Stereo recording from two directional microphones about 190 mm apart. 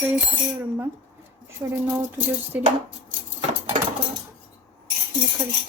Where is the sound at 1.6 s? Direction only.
15° right (ahead or behind).